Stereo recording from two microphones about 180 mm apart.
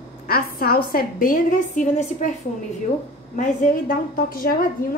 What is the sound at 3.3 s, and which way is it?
A woman's voice, 45° left (ahead or behind).